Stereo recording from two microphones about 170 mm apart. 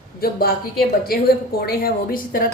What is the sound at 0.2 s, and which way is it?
A woman's voice, 60° left (ahead or behind).